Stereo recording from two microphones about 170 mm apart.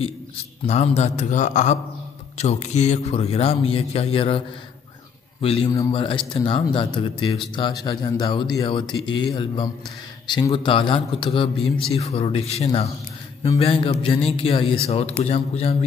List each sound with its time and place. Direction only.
0.7 s speech: 40° left (ahead or behind)
5.4 s speech: 35° left (ahead or behind)